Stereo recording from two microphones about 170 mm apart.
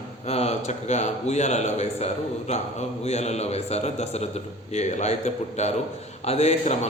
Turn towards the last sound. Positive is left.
turn(degrees=40)  # may be behind; listen again after turning